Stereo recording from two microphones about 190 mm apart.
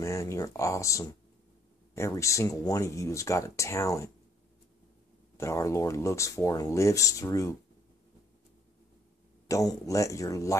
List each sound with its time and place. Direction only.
0.0 s speech: 15° left (ahead or behind)
5.4 s speech: 15° left (ahead or behind)
9.5 s speech: 15° left (ahead or behind)